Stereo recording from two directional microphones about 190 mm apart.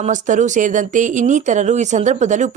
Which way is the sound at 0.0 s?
40° right (ahead or behind).